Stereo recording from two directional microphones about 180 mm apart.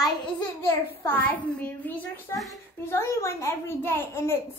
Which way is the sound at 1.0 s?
10° left (ahead or behind).